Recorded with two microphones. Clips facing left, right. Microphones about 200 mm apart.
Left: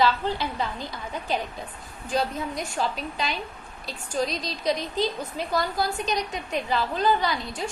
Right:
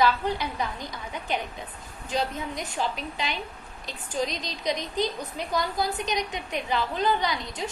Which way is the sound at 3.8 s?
20° right (ahead or behind).